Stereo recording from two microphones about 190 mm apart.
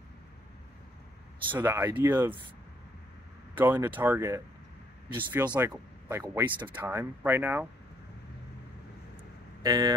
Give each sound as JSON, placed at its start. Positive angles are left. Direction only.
{"t": 1.6, "sound": "speech", "side_deg": -10}
{"t": 3.5, "sound": "speech", "side_deg": -10}
{"t": 9.6, "sound": "speech", "side_deg": -20}